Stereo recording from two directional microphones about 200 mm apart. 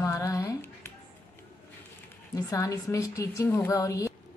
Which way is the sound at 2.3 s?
15° left (ahead or behind).